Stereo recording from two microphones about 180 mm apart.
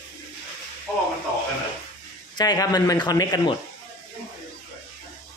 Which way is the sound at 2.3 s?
20° left (ahead or behind).